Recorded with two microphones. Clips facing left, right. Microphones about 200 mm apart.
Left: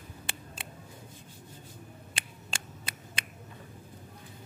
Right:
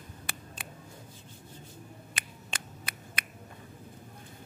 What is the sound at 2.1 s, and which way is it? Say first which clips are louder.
Finger snapping: even; 25° left (ahead or behind).